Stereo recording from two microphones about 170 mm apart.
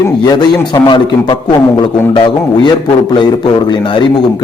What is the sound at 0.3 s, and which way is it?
A man's voice, 25° left (ahead or behind).